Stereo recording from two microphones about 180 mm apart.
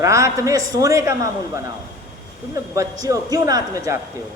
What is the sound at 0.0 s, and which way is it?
A man's voice, 15° right (ahead or behind).